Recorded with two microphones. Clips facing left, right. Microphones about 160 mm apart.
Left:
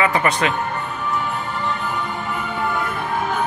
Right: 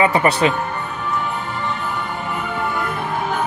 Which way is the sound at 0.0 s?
35° right (ahead or behind).